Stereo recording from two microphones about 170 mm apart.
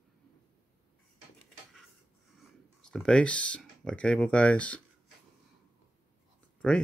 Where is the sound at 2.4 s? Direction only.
5° left (ahead or behind).